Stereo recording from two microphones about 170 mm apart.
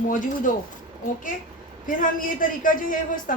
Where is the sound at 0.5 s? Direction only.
50° left (ahead or behind).